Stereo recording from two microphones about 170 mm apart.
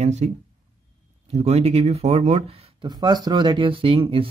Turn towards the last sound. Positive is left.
turn(degrees=-30)  # may be behind; listen again after turning